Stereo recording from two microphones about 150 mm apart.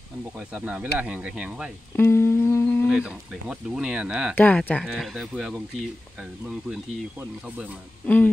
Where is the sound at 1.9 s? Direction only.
15° left (ahead or behind).